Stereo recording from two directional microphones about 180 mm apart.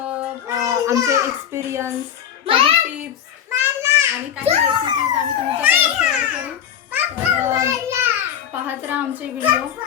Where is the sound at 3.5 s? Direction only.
10° right (ahead or behind).